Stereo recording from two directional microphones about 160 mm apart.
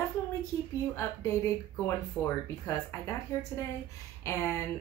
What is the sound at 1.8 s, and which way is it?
Speech, 15° left (ahead or behind).